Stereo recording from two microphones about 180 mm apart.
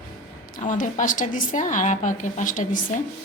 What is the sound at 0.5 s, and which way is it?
A woman's voice, 45° left (ahead or behind).